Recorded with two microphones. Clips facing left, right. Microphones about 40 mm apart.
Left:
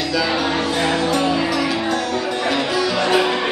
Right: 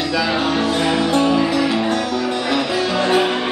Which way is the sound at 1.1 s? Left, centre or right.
Centre.